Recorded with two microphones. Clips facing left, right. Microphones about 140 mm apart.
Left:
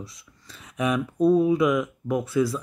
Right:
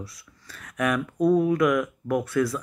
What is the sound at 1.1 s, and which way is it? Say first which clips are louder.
Speech: left 2 dB; 10° right (ahead or behind).